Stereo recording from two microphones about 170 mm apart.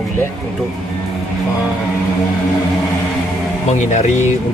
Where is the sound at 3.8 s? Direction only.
45° left (ahead or behind).